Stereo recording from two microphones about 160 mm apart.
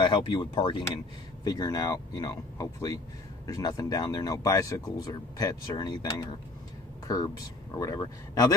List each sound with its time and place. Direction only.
0.0 s speech: 30° left (ahead or behind)
7.7 s speech: 20° left (ahead or behind)